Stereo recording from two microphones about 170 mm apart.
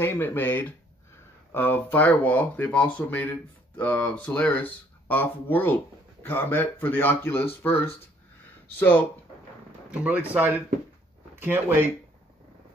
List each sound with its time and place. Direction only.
0.0 s speech: 10° left (ahead or behind)
9.8 s speech: 10° right (ahead or behind)